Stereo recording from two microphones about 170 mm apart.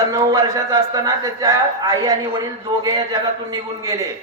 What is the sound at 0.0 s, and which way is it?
Speech, 20° right (ahead or behind).